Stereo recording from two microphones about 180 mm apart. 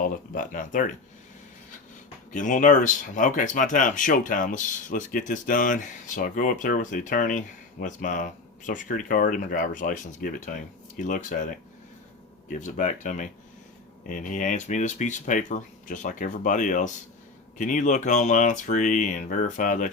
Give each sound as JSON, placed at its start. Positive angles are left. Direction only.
{"t": 0.0, "sound": "speech", "side_deg": 50}
{"t": 2.3, "sound": "speech", "side_deg": 45}